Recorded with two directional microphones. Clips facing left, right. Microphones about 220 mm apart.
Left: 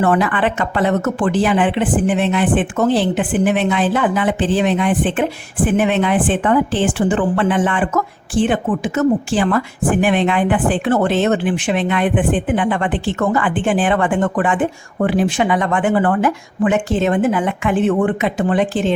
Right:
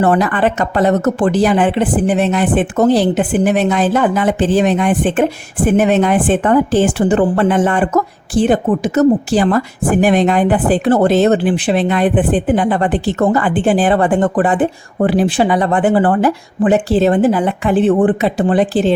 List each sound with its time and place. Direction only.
0.0 s speech: 40° right (ahead or behind)